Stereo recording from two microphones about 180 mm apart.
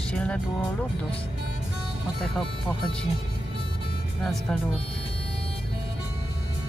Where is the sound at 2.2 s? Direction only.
Centre (ahead or behind).